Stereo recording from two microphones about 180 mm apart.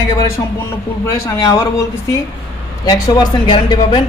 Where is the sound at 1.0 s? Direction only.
15° left (ahead or behind).